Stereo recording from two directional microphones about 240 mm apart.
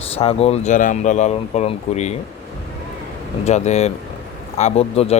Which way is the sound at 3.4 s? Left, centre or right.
Left.